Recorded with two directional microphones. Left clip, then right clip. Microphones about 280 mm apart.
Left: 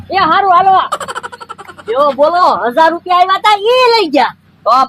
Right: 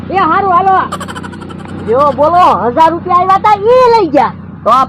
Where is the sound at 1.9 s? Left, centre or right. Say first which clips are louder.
Right 2 dB; left.